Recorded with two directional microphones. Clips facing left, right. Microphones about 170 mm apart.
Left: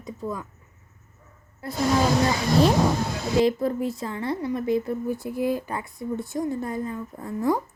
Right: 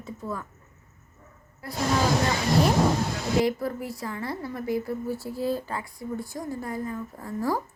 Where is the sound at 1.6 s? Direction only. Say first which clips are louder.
Left 4 dB; 25° left (ahead or behind).